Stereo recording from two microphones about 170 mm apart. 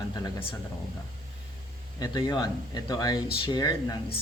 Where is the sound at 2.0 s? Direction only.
20° left (ahead or behind).